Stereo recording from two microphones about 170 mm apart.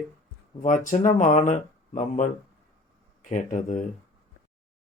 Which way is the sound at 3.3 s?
45° left (ahead or behind).